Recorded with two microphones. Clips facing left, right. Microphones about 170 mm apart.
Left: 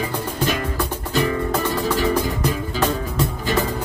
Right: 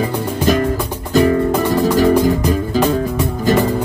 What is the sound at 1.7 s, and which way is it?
Music, 40° right (ahead or behind).